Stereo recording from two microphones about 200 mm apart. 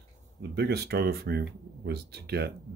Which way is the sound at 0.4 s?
55° right (ahead or behind).